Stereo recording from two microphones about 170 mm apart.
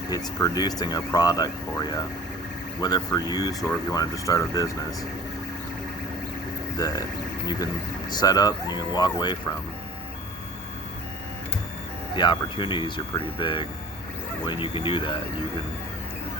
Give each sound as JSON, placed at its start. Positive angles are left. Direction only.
{"t": 0.1, "sound": "speech", "side_deg": 20}
{"t": 6.7, "sound": "speech", "side_deg": 20}
{"t": 8.1, "sound": "speech", "side_deg": 20}
{"t": 12.1, "sound": "speech", "side_deg": 25}